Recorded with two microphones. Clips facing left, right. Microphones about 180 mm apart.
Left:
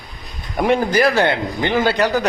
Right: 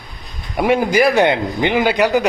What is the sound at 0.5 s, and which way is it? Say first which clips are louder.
A man's voice: right 2 dB; 5° right (ahead or behind).